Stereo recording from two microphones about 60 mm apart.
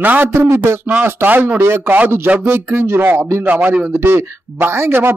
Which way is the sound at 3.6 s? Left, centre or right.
Right.